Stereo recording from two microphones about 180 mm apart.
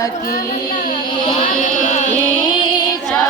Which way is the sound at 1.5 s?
45° right (ahead or behind).